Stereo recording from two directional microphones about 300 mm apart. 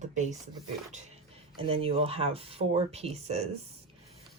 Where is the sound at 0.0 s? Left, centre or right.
Right.